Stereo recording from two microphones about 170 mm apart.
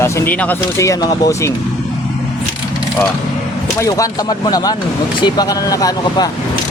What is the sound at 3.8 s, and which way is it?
Speech, 20° left (ahead or behind).